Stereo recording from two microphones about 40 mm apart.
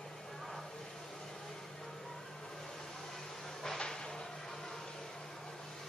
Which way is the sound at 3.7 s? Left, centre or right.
Centre.